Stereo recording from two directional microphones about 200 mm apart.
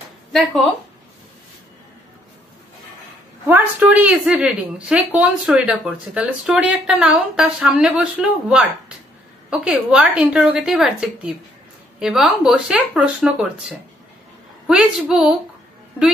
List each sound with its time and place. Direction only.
0.3 s speech: centre (ahead or behind)
3.4 s a woman's voice: 10° right (ahead or behind)